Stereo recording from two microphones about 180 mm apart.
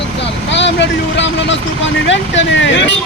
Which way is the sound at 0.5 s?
80° left.